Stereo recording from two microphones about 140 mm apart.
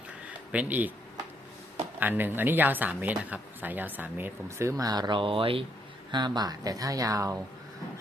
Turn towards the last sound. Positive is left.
turn(degrees=-25)  # may be behind; listen again after turning